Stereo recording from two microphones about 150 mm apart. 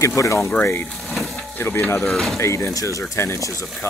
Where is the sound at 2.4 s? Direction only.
20° left (ahead or behind).